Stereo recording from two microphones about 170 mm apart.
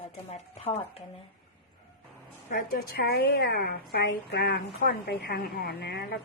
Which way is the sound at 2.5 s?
65° left (ahead or behind).